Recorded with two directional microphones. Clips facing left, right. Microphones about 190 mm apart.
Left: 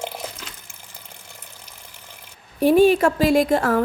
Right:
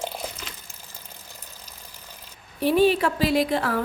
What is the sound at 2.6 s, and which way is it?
A woman's voice, 45° left (ahead or behind).